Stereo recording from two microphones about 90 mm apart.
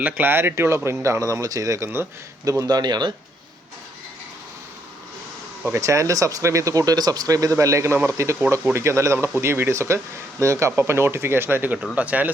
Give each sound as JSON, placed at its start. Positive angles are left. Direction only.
{"t": 0.0, "sound": "a man's voice", "side_deg": -25}
{"t": 5.7, "sound": "a man's voice", "side_deg": -35}